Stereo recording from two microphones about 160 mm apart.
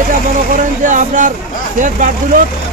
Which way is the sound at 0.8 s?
55° right (ahead or behind).